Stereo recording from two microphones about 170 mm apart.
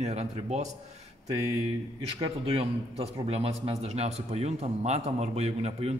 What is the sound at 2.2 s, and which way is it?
A man's voice, 35° right (ahead or behind).